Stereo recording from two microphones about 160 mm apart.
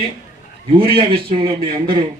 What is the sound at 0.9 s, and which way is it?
A man's voice, 35° right (ahead or behind).